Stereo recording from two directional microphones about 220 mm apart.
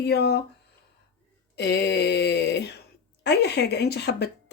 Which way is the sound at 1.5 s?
50° left (ahead or behind).